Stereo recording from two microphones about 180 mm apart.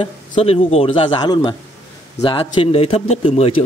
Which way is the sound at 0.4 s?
35° left (ahead or behind).